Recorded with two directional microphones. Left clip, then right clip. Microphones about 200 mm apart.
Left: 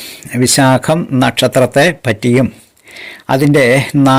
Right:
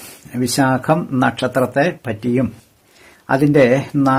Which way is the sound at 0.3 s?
20° left (ahead or behind).